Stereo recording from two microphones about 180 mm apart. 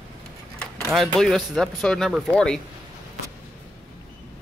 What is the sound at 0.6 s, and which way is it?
Speech, centre (ahead or behind).